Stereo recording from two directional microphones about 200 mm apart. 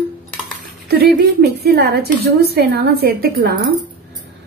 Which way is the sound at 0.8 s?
50° right (ahead or behind).